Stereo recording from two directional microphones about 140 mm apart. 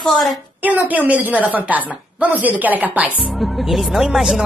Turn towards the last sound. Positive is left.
turn(degrees=-5)  # may be behind; listen again after turning